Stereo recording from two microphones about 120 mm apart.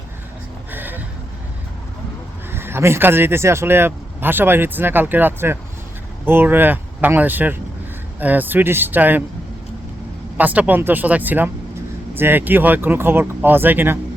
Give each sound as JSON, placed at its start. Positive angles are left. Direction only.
{"t": 0.7, "sound": "a sound", "side_deg": -15}
{"t": 2.5, "sound": "speech", "side_deg": -20}
{"t": 10.3, "sound": "speech", "side_deg": -15}